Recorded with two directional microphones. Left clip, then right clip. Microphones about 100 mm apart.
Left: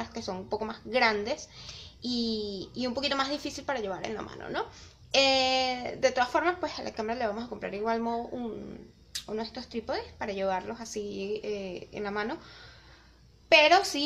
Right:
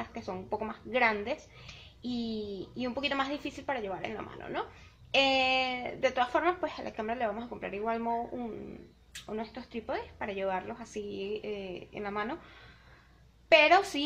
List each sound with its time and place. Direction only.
0.0 s speech: 20° left (ahead or behind)
3.2 s speech: 30° left (ahead or behind)
13.5 s speech: 25° left (ahead or behind)